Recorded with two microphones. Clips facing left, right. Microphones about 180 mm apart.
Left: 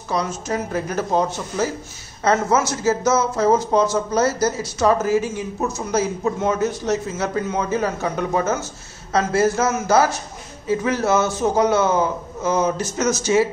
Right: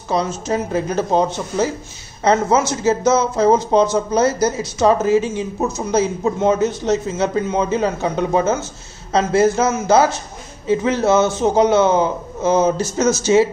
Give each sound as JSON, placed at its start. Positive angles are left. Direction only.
{"t": 0.1, "sound": "speech", "side_deg": -25}